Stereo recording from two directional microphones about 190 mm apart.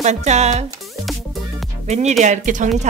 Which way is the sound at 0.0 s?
35° right (ahead or behind).